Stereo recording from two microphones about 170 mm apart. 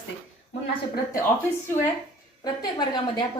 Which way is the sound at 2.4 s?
25° left (ahead or behind).